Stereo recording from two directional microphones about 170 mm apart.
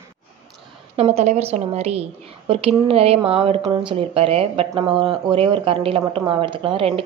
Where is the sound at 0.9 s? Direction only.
40° right (ahead or behind).